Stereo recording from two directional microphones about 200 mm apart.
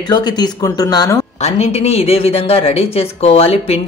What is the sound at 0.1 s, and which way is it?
Speech, 20° left (ahead or behind).